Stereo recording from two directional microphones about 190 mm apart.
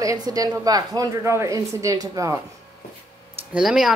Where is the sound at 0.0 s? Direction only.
20° right (ahead or behind).